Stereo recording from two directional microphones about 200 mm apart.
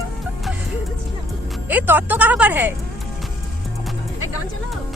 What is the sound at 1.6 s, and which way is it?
Speech, 10° right (ahead or behind).